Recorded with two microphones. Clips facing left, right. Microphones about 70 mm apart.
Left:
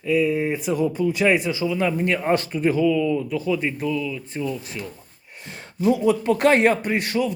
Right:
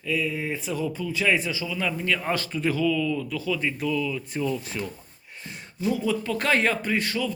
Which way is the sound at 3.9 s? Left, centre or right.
Centre.